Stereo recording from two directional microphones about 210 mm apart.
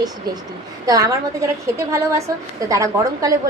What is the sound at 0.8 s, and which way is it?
A woman's voice, 15° right (ahead or behind).